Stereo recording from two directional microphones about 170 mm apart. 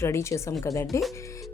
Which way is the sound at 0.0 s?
15° left (ahead or behind).